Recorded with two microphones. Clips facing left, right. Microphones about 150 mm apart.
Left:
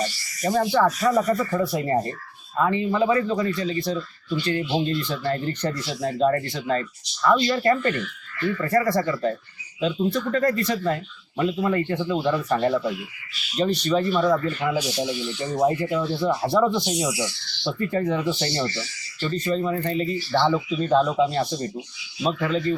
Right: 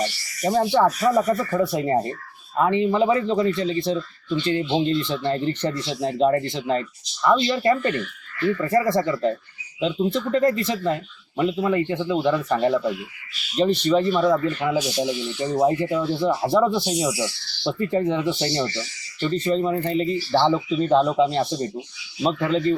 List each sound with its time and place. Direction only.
0.0 s rub: 25° right (ahead or behind)
0.9 s speech: 15° right (ahead or behind)
14.6 s speech: 5° right (ahead or behind)
15.0 s speech: 25° right (ahead or behind)
15.5 s speech: 15° right (ahead or behind)